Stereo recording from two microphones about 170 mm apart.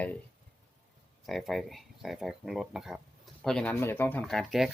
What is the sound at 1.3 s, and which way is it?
Speech, centre (ahead or behind).